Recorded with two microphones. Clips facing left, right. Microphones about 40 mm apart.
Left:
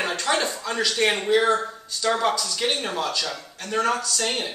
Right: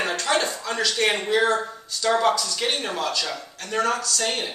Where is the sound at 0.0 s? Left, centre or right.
Centre.